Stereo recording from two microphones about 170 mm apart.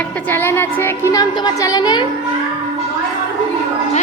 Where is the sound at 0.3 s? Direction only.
10° left (ahead or behind).